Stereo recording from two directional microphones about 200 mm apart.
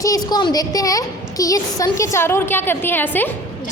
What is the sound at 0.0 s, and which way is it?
A woman's voice, 20° left (ahead or behind).